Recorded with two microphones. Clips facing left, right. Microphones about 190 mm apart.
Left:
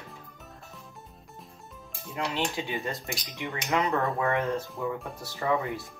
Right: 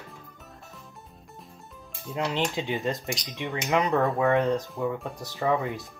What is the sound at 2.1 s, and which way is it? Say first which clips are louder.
Speech: right 3 dB; 20° right (ahead or behind).